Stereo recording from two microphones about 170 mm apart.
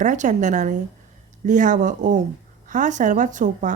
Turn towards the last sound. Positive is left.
turn(degrees=-45)  # may be behind; listen again after turning